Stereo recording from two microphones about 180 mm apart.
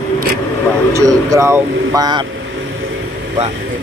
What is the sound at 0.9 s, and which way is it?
Speech, 15° right (ahead or behind).